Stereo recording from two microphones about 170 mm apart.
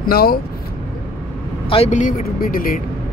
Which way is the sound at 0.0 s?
60° left (ahead or behind).